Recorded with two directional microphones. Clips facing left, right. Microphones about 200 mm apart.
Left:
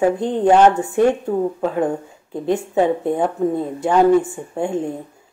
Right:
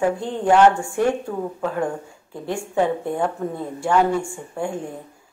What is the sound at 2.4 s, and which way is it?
Speech, 20° left (ahead or behind).